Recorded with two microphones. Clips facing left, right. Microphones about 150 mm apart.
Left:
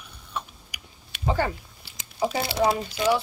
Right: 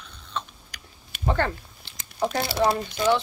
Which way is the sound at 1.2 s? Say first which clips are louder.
Even; 10° left (ahead or behind).